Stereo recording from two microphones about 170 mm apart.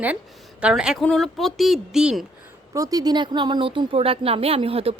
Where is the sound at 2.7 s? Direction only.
20° right (ahead or behind).